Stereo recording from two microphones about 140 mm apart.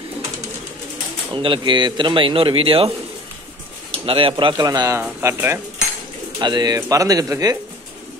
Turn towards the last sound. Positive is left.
turn(degrees=-25)  # may be behind; listen again after turning